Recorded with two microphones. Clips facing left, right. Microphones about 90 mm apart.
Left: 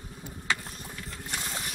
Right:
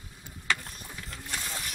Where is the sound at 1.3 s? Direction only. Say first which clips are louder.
Left 1 dB; 15° left (ahead or behind).